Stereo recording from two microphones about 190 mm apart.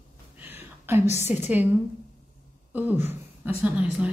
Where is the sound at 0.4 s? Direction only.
10° right (ahead or behind).